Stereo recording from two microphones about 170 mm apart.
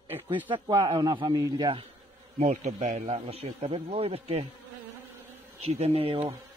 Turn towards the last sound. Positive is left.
turn(degrees=-35)  # may be behind; listen again after turning